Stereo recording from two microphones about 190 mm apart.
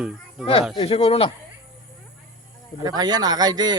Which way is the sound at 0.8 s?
30° left (ahead or behind).